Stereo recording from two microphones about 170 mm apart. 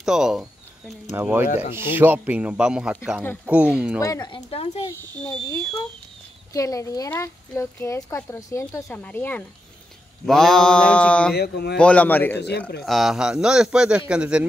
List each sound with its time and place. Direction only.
0.0 s a sound: 5° right (ahead or behind)
1.1 s speech: 10° right (ahead or behind)
1.4 s speech: 40° left (ahead or behind)
2.0 s speech: 10° right (ahead or behind)
4.0 s speech: 20° left (ahead or behind)
4.8 s a man's voice: 10° left (ahead or behind)
11.3 s speech: 70° left (ahead or behind)
11.8 s speech: 10° left (ahead or behind)
12.4 s speech: 80° left
12.8 s a man's voice: centre (ahead or behind)